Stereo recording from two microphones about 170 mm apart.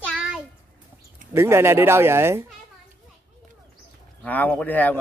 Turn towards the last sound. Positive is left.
turn(degrees=10)  # may be behind; listen again after turning